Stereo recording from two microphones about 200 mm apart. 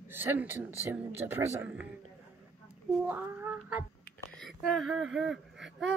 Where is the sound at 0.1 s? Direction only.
10° right (ahead or behind).